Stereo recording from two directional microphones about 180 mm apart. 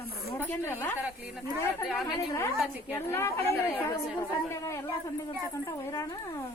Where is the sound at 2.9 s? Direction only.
15° left (ahead or behind).